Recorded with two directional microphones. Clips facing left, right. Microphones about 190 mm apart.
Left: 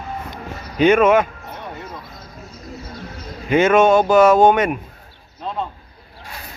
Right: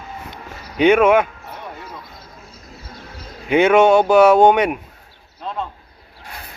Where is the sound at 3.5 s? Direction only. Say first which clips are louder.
Right 1 dB; 15° right (ahead or behind).